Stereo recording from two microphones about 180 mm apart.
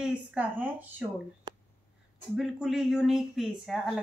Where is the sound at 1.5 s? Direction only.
25° right (ahead or behind).